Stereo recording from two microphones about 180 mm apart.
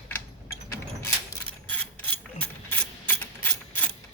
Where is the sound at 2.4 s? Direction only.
10° left (ahead or behind).